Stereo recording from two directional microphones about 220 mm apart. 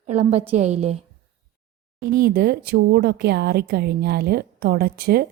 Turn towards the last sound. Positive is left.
turn(degrees=-45)  # may be behind; listen again after turning